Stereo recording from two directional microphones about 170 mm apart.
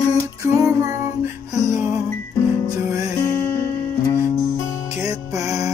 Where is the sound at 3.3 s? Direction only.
15° left (ahead or behind).